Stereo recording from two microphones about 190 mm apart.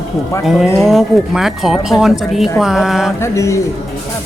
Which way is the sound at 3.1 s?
15° left (ahead or behind).